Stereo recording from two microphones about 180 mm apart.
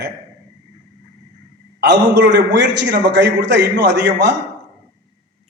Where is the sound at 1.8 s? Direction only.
70° right (ahead or behind).